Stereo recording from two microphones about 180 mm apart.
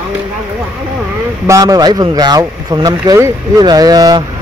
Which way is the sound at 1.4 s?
20° right (ahead or behind).